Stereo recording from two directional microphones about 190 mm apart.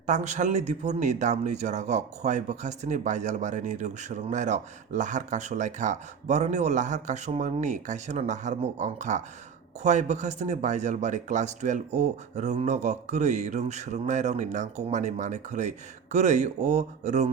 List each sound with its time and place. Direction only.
0.0 s speech: 40° right (ahead or behind)